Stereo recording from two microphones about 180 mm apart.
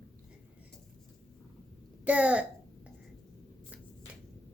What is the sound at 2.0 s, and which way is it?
Speech, 10° right (ahead or behind).